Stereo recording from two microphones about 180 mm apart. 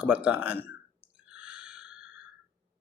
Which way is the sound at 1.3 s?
5° right (ahead or behind).